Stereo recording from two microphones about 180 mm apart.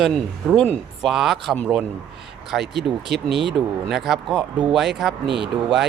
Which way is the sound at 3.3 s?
75° right (ahead or behind).